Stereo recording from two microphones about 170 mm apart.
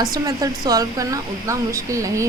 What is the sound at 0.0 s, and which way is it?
Speech, 20° right (ahead or behind).